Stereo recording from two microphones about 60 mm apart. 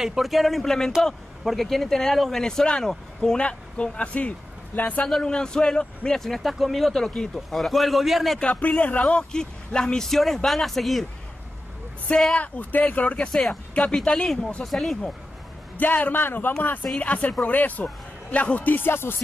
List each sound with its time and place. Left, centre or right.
0.0 s speech: centre; by 5.0 s left
5.0 s speech: centre
8.4 s speech: left; by 11.1 s centre
12.4 s speech: left
13.3 s speech: centre
15.8 s a man's voice: left
17.0 s speech: left